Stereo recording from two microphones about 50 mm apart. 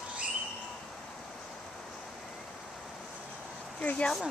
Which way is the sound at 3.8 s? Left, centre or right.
Left.